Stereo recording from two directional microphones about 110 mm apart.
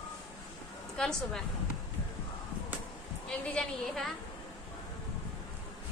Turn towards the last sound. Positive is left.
turn(degrees=5)  # may be behind; listen again after turning